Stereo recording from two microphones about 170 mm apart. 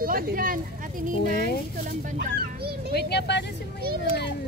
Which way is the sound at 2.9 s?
75° left (ahead or behind).